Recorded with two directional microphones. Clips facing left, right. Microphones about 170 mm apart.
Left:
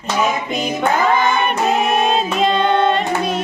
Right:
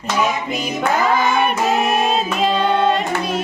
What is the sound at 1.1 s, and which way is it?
Music, 5° right (ahead or behind).